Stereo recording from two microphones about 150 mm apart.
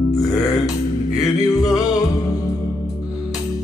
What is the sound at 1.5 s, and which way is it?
Music, 25° left (ahead or behind).